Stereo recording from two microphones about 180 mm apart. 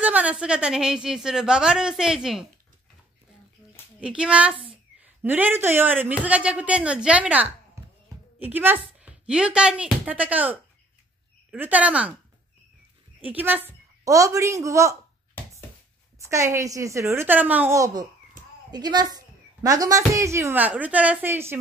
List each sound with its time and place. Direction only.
0.0 s a woman's voice: 10° right (ahead or behind)
4.0 s a woman's voice: 5° right (ahead or behind)
7.8 s a sound: 15° right (ahead or behind)
8.4 s a woman's voice: 10° right (ahead or behind)
13.2 s speech: 10° right (ahead or behind)
16.2 s a woman's voice: 15° right (ahead or behind)